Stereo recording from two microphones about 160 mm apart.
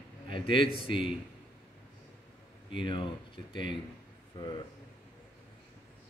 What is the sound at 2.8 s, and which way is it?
Speech, 30° left (ahead or behind).